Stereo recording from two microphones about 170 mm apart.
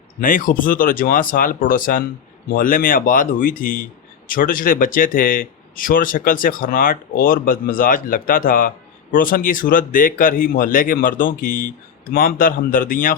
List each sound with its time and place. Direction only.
0.2 s speech: 55° left (ahead or behind)